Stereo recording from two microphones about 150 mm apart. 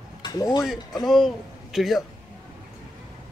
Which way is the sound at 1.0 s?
Centre (ahead or behind).